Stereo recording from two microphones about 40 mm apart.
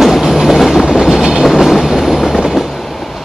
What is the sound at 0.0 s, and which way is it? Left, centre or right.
Train, centre.